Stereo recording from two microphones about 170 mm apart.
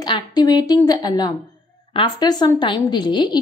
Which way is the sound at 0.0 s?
25° left (ahead or behind).